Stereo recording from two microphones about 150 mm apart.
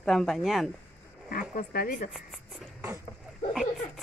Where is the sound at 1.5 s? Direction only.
70° left (ahead or behind).